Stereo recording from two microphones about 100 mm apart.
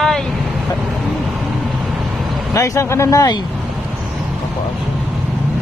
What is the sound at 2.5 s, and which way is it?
Speech, 30° left (ahead or behind).